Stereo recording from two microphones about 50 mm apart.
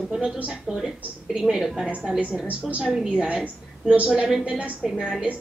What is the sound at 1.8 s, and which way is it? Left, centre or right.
A woman's voice, centre.